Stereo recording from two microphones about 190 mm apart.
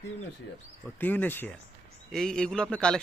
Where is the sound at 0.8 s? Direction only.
10° left (ahead or behind).